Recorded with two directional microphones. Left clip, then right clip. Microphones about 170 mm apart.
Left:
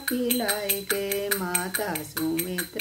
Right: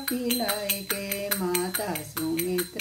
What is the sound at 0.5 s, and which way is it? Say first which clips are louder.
Music: left 2 dB; 15° right (ahead or behind).